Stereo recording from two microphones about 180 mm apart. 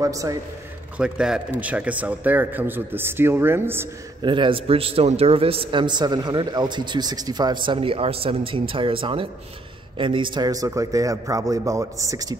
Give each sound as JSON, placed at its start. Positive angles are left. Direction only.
{"t": 0.0, "sound": "a man's voice", "side_deg": -20}
{"t": 0.9, "sound": "a man's voice", "side_deg": -5}
{"t": 4.2, "sound": "a man's voice", "side_deg": -25}